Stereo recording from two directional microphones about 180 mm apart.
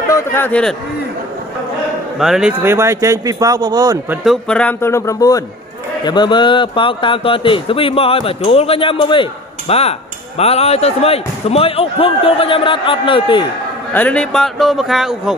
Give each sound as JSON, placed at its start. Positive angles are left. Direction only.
{"t": 0.1, "sound": "a man's voice", "side_deg": 10}
{"t": 2.1, "sound": "speech", "side_deg": 0}
{"t": 2.6, "sound": "speech", "side_deg": -15}
{"t": 4.2, "sound": "speech", "side_deg": 0}
{"t": 13.9, "sound": "speech", "side_deg": 5}